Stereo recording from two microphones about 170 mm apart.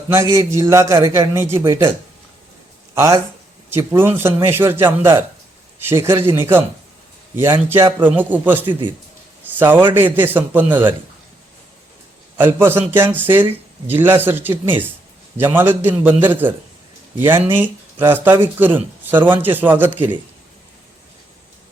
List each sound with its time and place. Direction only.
0.1 s a man's voice: 15° right (ahead or behind)
2.9 s a man's voice: 15° right (ahead or behind)
12.4 s a man's voice: 15° right (ahead or behind)